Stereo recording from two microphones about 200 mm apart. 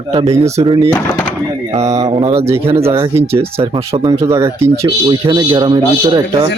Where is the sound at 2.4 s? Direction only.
15° right (ahead or behind).